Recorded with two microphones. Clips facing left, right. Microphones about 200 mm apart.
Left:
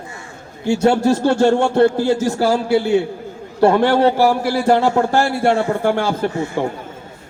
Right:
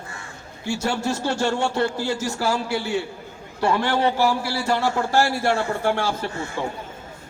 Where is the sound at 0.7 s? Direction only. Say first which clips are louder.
Left 10 dB; 55° left (ahead or behind).